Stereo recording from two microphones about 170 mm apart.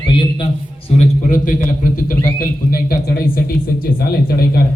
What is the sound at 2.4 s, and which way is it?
A man's voice, 65° left (ahead or behind).